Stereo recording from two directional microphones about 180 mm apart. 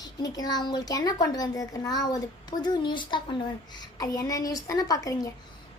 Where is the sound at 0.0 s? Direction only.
20° left (ahead or behind).